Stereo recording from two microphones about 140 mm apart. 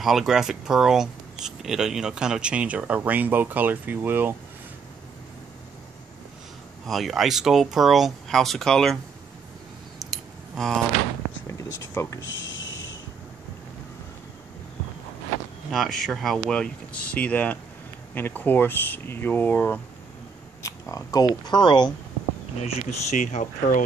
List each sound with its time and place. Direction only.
0.0 s speech: centre (ahead or behind)
6.9 s speech: centre (ahead or behind)
10.5 s speech: centre (ahead or behind)
11.4 s a sound: 20° left (ahead or behind)
15.7 s speech: centre (ahead or behind)
20.6 s speech: 25° left (ahead or behind)
22.6 s speech: 50° left (ahead or behind)